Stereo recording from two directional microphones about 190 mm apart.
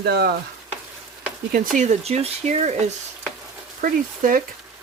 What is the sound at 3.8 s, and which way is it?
Speech, 45° right (ahead or behind).